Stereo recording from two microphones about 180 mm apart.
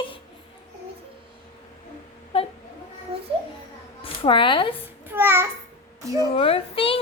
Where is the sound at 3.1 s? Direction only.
30° right (ahead or behind).